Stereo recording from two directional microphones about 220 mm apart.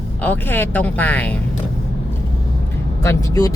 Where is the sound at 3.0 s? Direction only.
15° left (ahead or behind).